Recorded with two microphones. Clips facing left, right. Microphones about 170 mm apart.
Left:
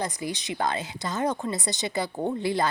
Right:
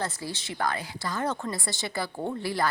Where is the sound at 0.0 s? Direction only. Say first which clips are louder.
Left 3 dB; 15° left (ahead or behind).